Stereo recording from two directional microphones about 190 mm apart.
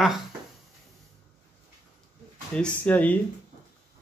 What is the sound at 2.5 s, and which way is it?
Speech, 5° left (ahead or behind).